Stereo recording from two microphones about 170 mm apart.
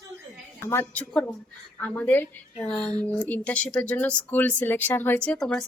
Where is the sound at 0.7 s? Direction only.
15° left (ahead or behind).